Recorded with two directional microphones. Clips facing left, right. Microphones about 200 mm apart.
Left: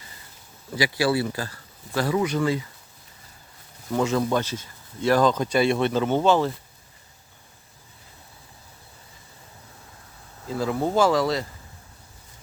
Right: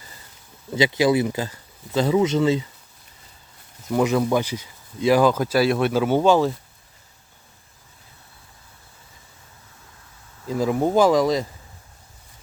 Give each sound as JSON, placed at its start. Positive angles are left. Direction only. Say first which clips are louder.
{"t": 0.8, "sound": "speech", "louder": "right 4 dB", "side_deg": -20}
{"t": 3.9, "sound": "speech", "louder": "right 3 dB", "side_deg": -15}
{"t": 10.5, "sound": "speech", "louder": "right 4 dB", "side_deg": -15}